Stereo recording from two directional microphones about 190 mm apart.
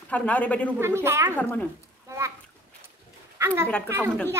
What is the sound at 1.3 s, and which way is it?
Speech, 10° left (ahead or behind).